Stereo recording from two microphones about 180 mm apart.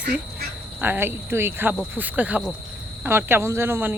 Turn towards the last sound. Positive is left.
turn(degrees=-15)  # may be behind; listen again after turning